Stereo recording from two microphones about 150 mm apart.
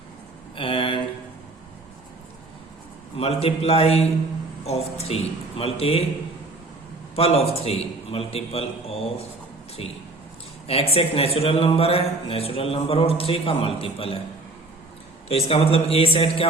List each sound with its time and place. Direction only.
0.5 s a sound: 35° left (ahead or behind)
3.2 s a man's voice: 40° left (ahead or behind)
7.2 s speech: 40° left (ahead or behind)
10.7 s speech: 40° left (ahead or behind)
15.3 s a man's voice: 40° left (ahead or behind)